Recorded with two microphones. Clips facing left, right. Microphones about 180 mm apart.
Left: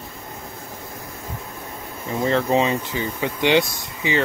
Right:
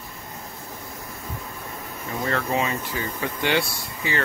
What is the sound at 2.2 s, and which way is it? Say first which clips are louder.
Speech: left 6 dB; 25° left (ahead or behind).